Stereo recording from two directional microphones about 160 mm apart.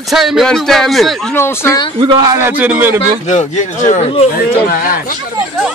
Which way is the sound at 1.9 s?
30° right (ahead or behind).